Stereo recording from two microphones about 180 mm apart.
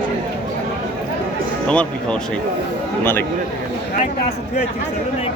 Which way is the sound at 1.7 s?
5° left (ahead or behind).